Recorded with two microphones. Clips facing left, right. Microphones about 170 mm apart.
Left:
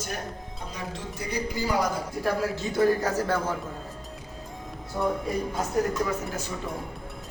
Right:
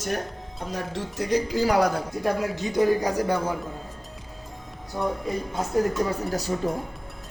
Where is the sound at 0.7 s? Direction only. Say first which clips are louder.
Right 6 dB; 80° right.